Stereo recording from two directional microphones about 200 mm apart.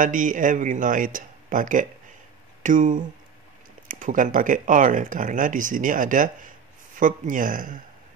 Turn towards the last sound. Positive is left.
turn(degrees=-40)  # may be behind; listen again after turning